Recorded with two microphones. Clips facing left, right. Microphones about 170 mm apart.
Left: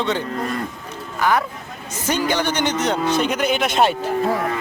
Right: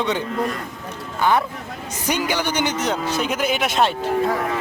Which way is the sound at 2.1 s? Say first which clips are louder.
Left 2 dB; 10° right (ahead or behind).